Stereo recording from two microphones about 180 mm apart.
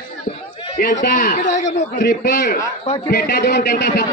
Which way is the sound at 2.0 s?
55° left (ahead or behind).